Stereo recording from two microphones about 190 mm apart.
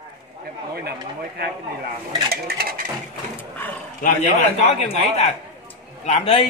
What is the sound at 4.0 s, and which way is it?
A man's voice, 35° left (ahead or behind).